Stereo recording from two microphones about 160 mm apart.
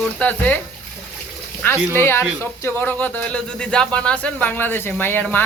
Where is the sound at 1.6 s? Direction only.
10° left (ahead or behind).